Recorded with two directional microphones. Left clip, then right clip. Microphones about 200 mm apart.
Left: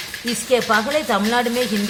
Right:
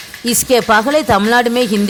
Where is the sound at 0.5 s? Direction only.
50° right (ahead or behind).